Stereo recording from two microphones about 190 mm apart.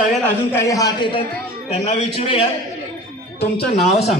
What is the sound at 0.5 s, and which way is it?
A man's voice, 15° left (ahead or behind).